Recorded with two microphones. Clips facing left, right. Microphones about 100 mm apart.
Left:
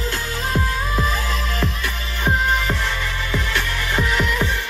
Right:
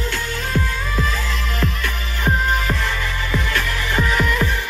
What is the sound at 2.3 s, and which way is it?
Music, centre (ahead or behind).